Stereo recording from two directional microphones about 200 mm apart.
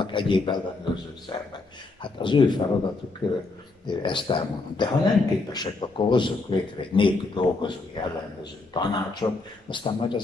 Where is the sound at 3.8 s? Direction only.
25° left (ahead or behind).